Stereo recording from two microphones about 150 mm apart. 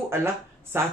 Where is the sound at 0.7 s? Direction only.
15° right (ahead or behind).